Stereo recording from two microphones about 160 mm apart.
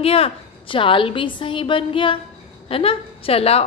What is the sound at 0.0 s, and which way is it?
A woman's voice, 40° left (ahead or behind).